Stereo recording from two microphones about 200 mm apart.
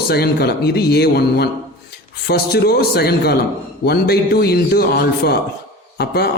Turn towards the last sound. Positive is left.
turn(degrees=50)  # may be behind; listen again after turning